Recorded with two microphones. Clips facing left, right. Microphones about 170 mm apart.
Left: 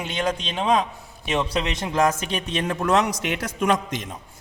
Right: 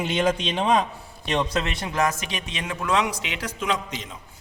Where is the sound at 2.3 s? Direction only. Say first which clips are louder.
Left 6 dB; 40° left (ahead or behind); by 4.0 s 55° left (ahead or behind).